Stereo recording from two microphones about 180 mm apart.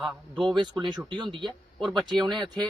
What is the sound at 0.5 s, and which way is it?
Speech, 25° right (ahead or behind).